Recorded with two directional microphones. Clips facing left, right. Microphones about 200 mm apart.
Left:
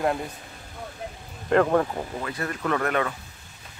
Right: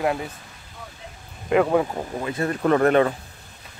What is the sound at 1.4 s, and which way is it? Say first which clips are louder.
Speech: right 1 dB; 5° right (ahead or behind).